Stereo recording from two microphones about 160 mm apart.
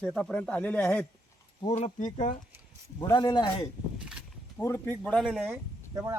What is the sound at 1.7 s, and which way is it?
Speech, 50° left (ahead or behind).